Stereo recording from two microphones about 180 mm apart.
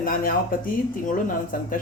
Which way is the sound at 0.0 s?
50° left (ahead or behind).